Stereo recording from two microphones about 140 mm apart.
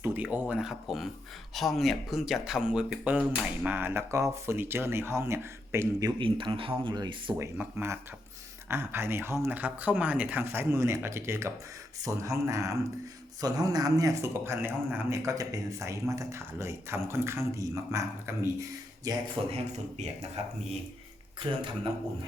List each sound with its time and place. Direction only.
0.0 s speech: 15° right (ahead or behind)
6.1 s speech: 35° right (ahead or behind)
7.3 s speech: 15° right (ahead or behind)
19.5 s speech: 45° right (ahead or behind)